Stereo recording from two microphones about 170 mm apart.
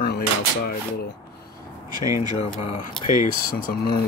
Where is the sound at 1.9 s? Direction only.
25° right (ahead or behind).